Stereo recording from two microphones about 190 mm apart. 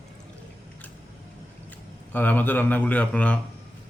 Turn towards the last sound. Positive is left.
turn(degrees=5)  # may be behind; listen again after turning